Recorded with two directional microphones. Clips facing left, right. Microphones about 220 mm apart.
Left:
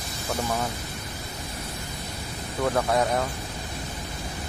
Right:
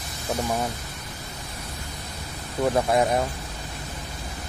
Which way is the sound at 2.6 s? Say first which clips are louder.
Right 2 dB; 20° right (ahead or behind).